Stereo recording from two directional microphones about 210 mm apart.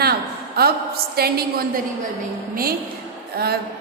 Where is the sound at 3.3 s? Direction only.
50° right (ahead or behind).